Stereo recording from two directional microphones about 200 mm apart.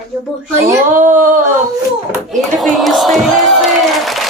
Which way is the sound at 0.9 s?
40° right (ahead or behind).